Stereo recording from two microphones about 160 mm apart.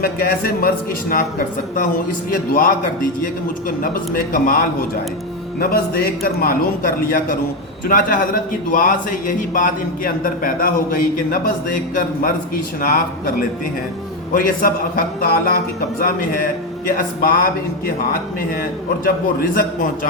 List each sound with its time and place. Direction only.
0.0 s a man's voice: 70° left (ahead or behind)
2.3 s a man's voice: 60° left (ahead or behind)
4.1 s a man's voice: 60° left (ahead or behind)
14.3 s a man's voice: 60° left (ahead or behind)
19.0 s a man's voice: 60° left (ahead or behind)